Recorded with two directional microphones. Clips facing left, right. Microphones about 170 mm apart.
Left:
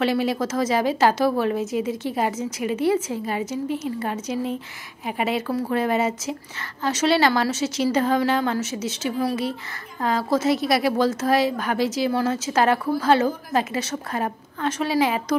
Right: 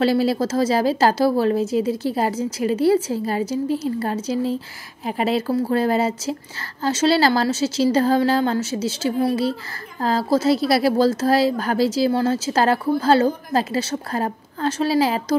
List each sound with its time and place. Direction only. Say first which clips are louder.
0.0 s a woman's voice: right 4 dB; 35° right (ahead or behind)